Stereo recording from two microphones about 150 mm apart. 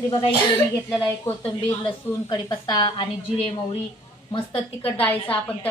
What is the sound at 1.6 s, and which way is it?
A woman's voice, 30° left (ahead or behind).